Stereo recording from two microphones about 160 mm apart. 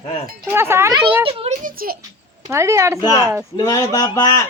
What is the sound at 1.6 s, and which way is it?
Speech, 65° right (ahead or behind).